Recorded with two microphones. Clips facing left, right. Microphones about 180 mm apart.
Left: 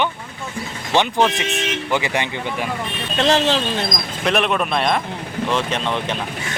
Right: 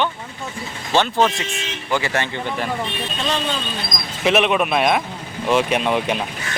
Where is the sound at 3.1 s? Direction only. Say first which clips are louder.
Left 8 dB; 80° left.